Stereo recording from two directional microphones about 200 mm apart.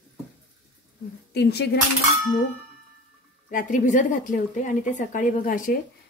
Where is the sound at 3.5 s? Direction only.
40° left (ahead or behind).